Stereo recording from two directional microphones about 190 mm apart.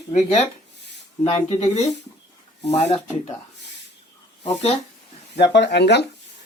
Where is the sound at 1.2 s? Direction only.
35° left (ahead or behind).